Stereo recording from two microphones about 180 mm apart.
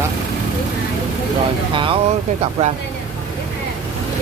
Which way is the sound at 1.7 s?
30° right (ahead or behind).